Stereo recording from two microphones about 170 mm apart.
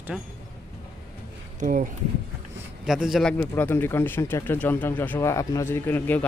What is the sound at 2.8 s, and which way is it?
Speech, centre (ahead or behind).